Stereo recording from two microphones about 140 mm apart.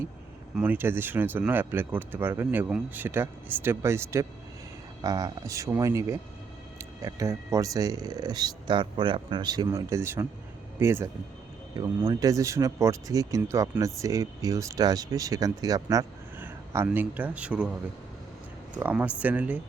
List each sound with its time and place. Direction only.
0.5 s speech: 10° right (ahead or behind)